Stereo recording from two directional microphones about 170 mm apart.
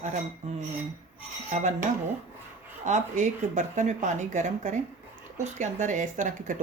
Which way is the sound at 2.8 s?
45° right (ahead or behind).